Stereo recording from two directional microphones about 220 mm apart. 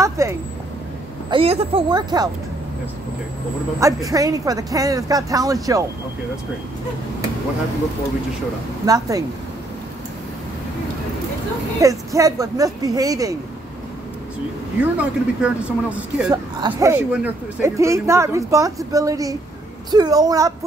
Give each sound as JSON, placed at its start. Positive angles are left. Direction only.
{"t": 0.0, "sound": "a sound", "side_deg": -15}
{"t": 1.3, "sound": "speech", "side_deg": -25}
{"t": 3.8, "sound": "speech", "side_deg": -15}
{"t": 8.8, "sound": "speech", "side_deg": -15}
{"t": 11.8, "sound": "speech", "side_deg": -15}
{"t": 15.0, "sound": "speech", "side_deg": -5}
{"t": 16.3, "sound": "speech", "side_deg": -15}